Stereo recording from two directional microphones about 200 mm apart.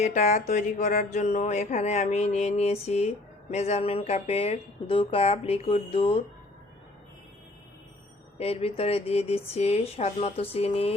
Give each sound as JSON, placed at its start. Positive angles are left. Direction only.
{"t": 0.0, "sound": "mantra", "side_deg": 35}
{"t": 8.4, "sound": "mantra", "side_deg": 30}